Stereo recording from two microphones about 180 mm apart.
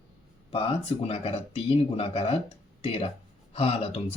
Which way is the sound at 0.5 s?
30° left (ahead or behind).